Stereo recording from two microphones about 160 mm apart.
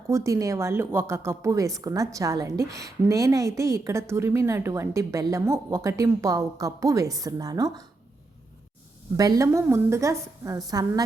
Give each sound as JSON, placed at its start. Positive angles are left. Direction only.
{"t": 0.1, "sound": "a woman's voice", "side_deg": -20}
{"t": 9.1, "sound": "a woman's voice", "side_deg": -25}